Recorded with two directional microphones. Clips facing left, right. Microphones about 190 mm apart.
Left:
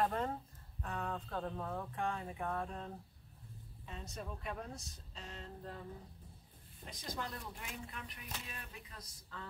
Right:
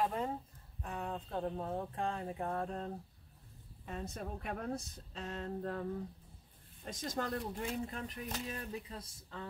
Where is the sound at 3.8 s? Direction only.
55° right (ahead or behind).